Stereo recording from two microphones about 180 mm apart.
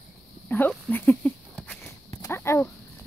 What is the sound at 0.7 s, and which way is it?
Speech, 10° left (ahead or behind).